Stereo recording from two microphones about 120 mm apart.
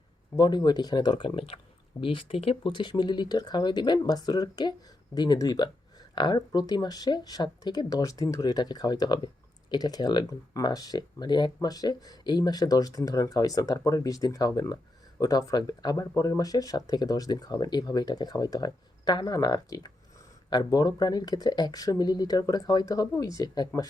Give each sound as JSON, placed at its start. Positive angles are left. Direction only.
{"t": 0.3, "sound": "speech", "side_deg": 35}